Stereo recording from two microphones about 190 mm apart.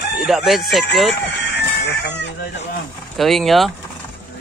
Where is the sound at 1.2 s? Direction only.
60° left (ahead or behind).